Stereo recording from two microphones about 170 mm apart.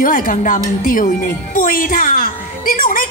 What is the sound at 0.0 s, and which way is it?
A woman's voice, 55° left (ahead or behind).